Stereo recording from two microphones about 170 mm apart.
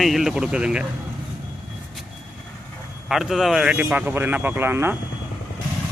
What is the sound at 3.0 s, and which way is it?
A man's voice, centre (ahead or behind).